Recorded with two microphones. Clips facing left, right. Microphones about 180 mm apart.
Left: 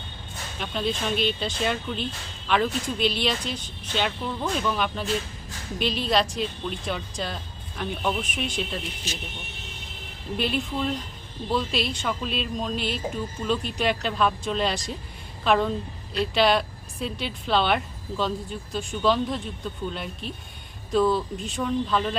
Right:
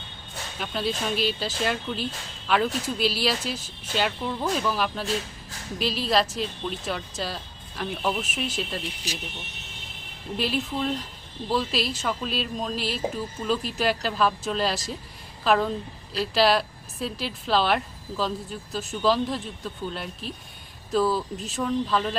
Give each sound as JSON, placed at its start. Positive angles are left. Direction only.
{"t": 0.6, "sound": "speech", "side_deg": -5}
{"t": 10.3, "sound": "speech", "side_deg": 0}